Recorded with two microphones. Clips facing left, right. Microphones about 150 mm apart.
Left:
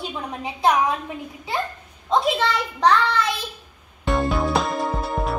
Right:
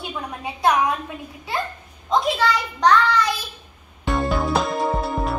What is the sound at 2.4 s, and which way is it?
Child singing, 30° left (ahead or behind).